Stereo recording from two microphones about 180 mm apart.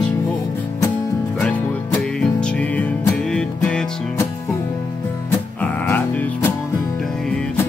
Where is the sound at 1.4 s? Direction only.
5° left (ahead or behind).